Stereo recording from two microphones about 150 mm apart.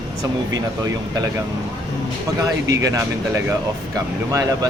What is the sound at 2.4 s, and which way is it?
Speech, 25° right (ahead or behind).